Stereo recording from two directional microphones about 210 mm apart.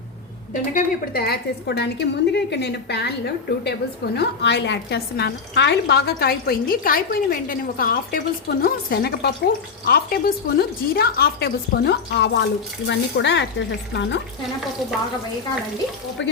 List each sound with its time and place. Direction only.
0.5 s a woman's voice: 40° left (ahead or behind); by 14.2 s 55° left (ahead or behind)